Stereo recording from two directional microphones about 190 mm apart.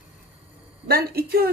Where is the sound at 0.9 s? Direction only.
55° right (ahead or behind).